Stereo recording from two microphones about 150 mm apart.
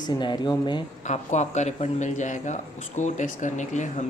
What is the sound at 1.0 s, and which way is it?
Speech, 50° left (ahead or behind).